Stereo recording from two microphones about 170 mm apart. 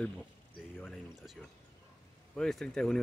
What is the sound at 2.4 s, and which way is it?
Speech, 5° left (ahead or behind).